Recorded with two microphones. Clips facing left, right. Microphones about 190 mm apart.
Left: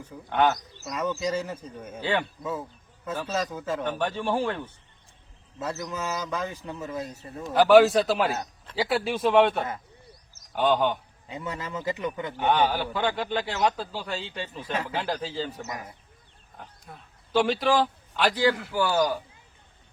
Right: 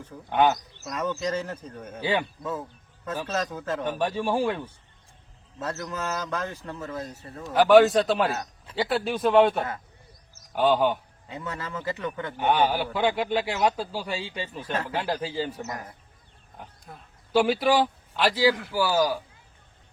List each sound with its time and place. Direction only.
0.3 s speech: 20° right (ahead or behind)
0.9 s a man's voice: 5° left (ahead or behind)
2.0 s a man's voice: 10° right (ahead or behind)
2.4 s a man's voice: centre (ahead or behind)
3.8 s a man's voice: 10° right (ahead or behind)
5.5 s a man's voice: 5° left (ahead or behind)
7.5 s a man's voice: centre (ahead or behind)
11.3 s a man's voice: 15° left (ahead or behind)
12.4 s a man's voice: 10° right (ahead or behind)
14.6 s a man's voice: 10° left (ahead or behind)
14.8 s a man's voice: 5° right (ahead or behind)
15.7 s a man's voice: 10° left (ahead or behind)
16.6 s a man's voice: 5° right (ahead or behind)